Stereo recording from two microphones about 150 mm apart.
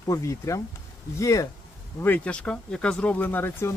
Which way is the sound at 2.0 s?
10° left (ahead or behind).